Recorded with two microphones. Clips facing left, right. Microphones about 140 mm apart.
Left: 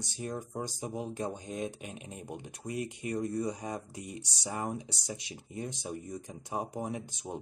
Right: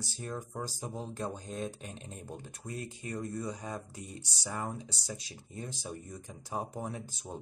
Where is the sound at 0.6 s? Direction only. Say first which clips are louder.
Left 3 dB; 15° left (ahead or behind).